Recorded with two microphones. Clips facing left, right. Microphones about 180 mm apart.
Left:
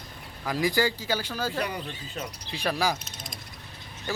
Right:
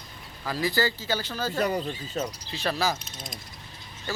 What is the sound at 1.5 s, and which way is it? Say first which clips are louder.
Speech: right 9 dB; 45° right (ahead or behind).